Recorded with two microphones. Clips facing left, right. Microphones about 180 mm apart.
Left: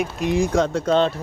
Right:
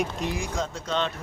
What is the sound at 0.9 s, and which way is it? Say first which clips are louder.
Speech: left 9 dB; 35° left (ahead or behind).